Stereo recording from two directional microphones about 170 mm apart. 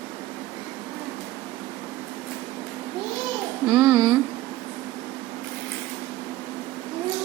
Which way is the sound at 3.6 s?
10° right (ahead or behind).